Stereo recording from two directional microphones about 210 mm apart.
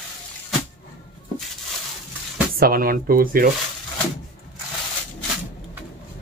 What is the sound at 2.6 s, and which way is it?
Speech, 45° right (ahead or behind).